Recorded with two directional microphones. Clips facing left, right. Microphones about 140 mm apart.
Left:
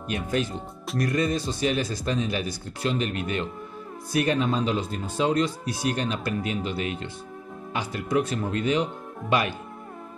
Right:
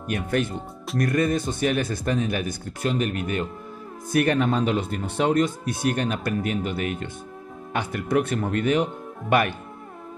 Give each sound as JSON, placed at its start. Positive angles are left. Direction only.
{"t": 0.1, "sound": "speech", "side_deg": -60}
{"t": 4.1, "sound": "speech", "side_deg": -60}